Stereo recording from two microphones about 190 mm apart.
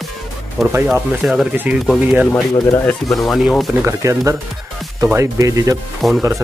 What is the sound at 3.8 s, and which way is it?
Speech, 15° right (ahead or behind).